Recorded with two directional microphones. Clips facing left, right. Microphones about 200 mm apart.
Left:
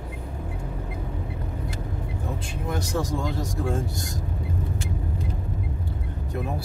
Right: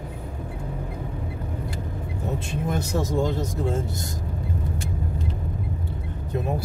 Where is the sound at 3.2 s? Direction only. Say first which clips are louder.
Right 3 dB; 20° right (ahead or behind).